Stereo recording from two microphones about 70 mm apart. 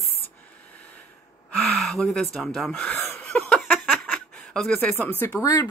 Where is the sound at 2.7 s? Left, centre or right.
Left.